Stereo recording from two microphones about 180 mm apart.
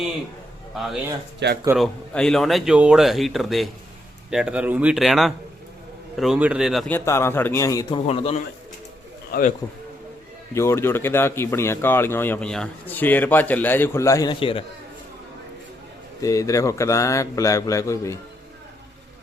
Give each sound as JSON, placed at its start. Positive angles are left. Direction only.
{"t": 0.7, "sound": "speech", "side_deg": 0}
{"t": 6.9, "sound": "a man's voice", "side_deg": 15}
{"t": 8.0, "sound": "a man's voice", "side_deg": 35}
{"t": 10.5, "sound": "a man's voice", "side_deg": 15}
{"t": 16.2, "sound": "a man's voice", "side_deg": 20}